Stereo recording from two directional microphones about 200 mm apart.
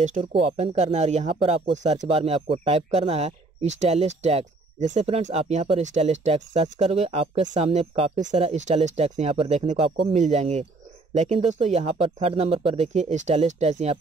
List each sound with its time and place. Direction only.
0.2 s speech: 30° right (ahead or behind)